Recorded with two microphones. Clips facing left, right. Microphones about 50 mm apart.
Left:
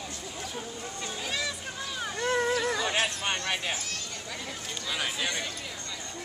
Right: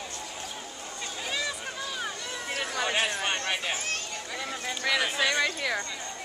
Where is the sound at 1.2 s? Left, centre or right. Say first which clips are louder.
Right 1 dB; centre.